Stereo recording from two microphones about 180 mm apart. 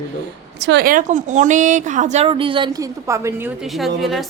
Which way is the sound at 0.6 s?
75° right (ahead or behind).